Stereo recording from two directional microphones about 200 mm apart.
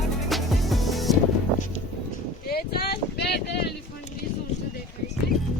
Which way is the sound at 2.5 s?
50° left (ahead or behind).